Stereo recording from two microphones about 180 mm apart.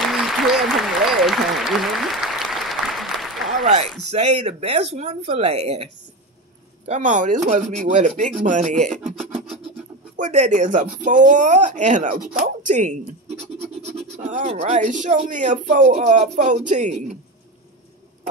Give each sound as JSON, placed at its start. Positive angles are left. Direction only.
{"t": 0.1, "sound": "applause", "side_deg": 0}
{"t": 3.5, "sound": "a man's voice", "side_deg": -40}
{"t": 6.9, "sound": "speech", "side_deg": -45}
{"t": 10.1, "sound": "speech", "side_deg": -45}